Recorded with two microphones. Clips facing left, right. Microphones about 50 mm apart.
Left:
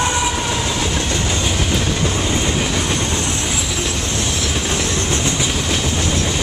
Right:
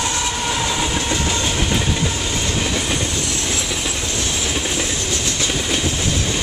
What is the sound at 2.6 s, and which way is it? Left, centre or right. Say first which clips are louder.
Train: left 1 dB; centre.